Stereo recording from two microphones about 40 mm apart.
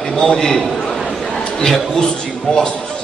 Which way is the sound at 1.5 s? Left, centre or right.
Centre.